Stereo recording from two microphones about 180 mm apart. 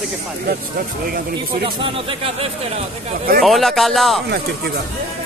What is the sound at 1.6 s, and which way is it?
Speech, 30° right (ahead or behind).